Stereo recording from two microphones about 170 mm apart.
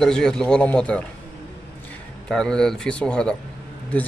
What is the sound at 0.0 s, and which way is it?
A man's voice, 5° left (ahead or behind).